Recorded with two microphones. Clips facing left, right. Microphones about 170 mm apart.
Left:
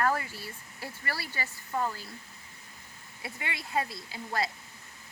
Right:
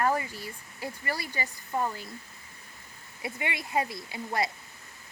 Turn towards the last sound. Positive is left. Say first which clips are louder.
# right 2 dB
turn(degrees=-20)  # may be behind; listen again after turning